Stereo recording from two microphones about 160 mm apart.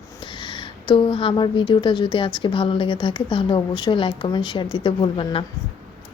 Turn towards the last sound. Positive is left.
turn(degrees=35)  # may be behind; listen again after turning